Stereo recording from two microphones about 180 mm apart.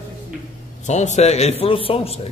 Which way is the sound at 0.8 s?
40° left (ahead or behind).